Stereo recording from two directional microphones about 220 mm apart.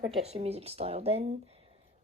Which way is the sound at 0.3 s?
30° right (ahead or behind).